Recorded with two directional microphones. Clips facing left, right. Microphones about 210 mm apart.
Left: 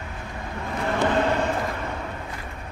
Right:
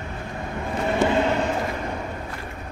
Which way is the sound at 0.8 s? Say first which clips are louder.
Right 2 dB; 15° right (ahead or behind).